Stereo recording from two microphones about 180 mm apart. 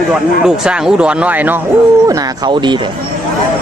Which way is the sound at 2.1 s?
20° right (ahead or behind).